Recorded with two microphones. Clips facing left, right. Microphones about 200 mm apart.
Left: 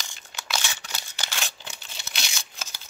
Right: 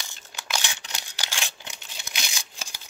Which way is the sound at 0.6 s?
15° right (ahead or behind).